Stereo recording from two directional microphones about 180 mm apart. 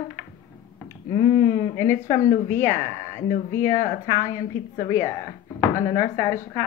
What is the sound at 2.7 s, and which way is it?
Speech, 45° left (ahead or behind).